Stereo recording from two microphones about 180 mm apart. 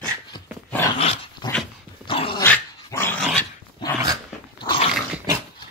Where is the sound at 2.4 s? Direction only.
10° left (ahead or behind).